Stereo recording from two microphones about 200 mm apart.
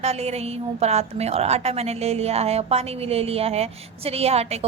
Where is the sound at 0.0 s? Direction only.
30° right (ahead or behind).